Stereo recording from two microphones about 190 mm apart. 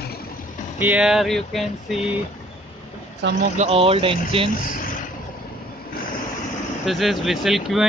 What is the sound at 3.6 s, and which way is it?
Speech, 30° right (ahead or behind).